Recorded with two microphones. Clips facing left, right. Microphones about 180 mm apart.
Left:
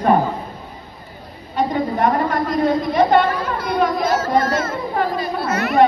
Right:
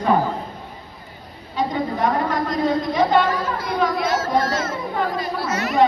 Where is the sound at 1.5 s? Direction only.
55° left (ahead or behind).